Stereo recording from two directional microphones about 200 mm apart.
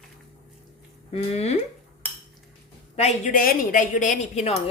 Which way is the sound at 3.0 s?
35° left (ahead or behind).